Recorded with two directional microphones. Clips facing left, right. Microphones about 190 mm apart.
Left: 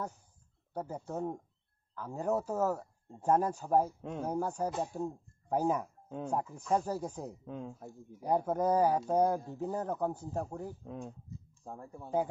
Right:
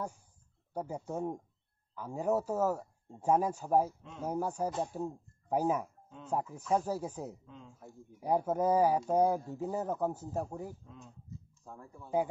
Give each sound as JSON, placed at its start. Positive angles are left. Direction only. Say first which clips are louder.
{"t": 0.7, "sound": "speech", "louder": "right 1 dB", "side_deg": -10}
{"t": 6.0, "sound": "speech", "louder": "left 11 dB", "side_deg": 55}
{"t": 6.5, "sound": "speech", "louder": "right 2 dB", "side_deg": -5}
{"t": 7.4, "sound": "speech", "louder": "left 10 dB", "side_deg": 60}
{"t": 8.2, "sound": "speech", "louder": "even", "side_deg": -5}
{"t": 10.8, "sound": "speech", "louder": "left 10 dB", "side_deg": 60}
{"t": 11.5, "sound": "speech", "louder": "left 7 dB", "side_deg": 35}